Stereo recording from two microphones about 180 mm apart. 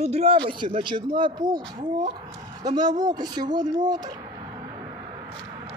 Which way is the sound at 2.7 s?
20° right (ahead or behind).